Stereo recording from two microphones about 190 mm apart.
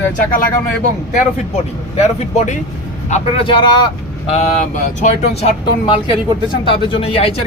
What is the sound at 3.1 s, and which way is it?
Speech, 30° left (ahead or behind).